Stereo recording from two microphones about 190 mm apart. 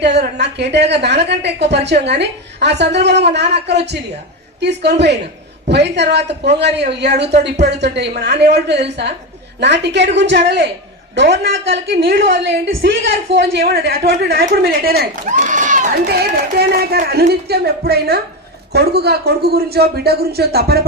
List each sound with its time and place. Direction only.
0.0 s a woman's voice: 60° right (ahead or behind)
12.6 s a woman's voice: 65° right (ahead or behind)
13.7 s speech: 55° right (ahead or behind)